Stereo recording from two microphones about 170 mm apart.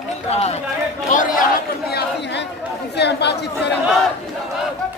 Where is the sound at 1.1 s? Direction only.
55° left (ahead or behind).